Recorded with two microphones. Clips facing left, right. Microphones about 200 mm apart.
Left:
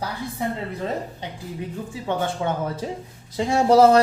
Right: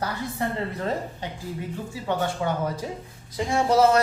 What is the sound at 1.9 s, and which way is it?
Speech, 20° left (ahead or behind).